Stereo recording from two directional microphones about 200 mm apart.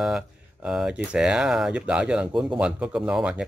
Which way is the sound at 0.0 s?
5° right (ahead or behind).